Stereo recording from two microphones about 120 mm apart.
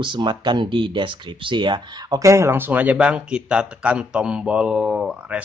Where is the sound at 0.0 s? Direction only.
40° right (ahead or behind).